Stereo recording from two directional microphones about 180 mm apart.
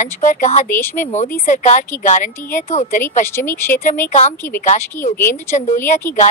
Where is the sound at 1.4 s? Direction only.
40° left (ahead or behind).